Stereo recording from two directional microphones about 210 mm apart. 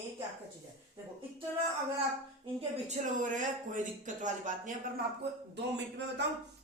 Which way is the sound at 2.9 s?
35° right (ahead or behind).